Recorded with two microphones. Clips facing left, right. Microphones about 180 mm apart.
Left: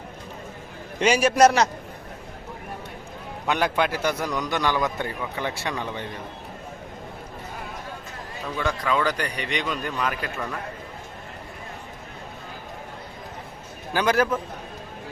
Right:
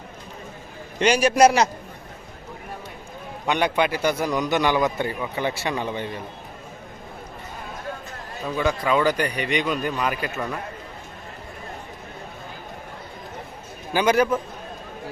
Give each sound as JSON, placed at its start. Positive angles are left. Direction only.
{"t": 0.9, "sound": "speech", "side_deg": 0}
{"t": 3.4, "sound": "speech", "side_deg": 0}
{"t": 4.3, "sound": "a man's voice", "side_deg": -20}
{"t": 4.9, "sound": "speech", "side_deg": -5}
{"t": 8.5, "sound": "a man's voice", "side_deg": -5}
{"t": 13.9, "sound": "speech", "side_deg": 0}